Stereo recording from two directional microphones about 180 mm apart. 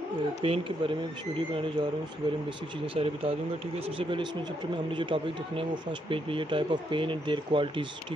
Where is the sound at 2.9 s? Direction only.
30° right (ahead or behind).